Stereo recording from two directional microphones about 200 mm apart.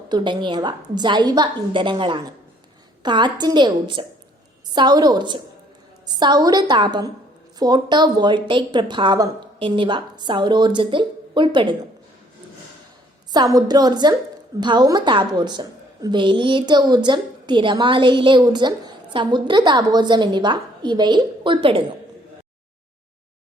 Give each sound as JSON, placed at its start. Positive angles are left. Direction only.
{"t": 0.1, "sound": "a woman's voice", "side_deg": -25}
{"t": 13.3, "sound": "a woman's voice", "side_deg": -20}